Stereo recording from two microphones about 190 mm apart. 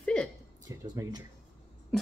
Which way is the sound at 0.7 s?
20° right (ahead or behind).